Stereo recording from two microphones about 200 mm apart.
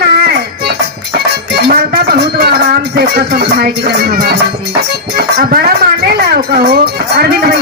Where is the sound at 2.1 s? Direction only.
50° right (ahead or behind).